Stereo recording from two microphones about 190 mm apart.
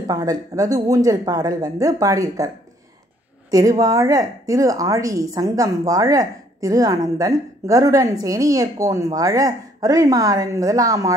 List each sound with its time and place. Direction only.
0.0 s a woman's voice: 20° right (ahead or behind)